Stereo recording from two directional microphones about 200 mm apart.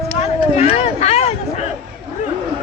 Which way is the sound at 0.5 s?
30° left (ahead or behind).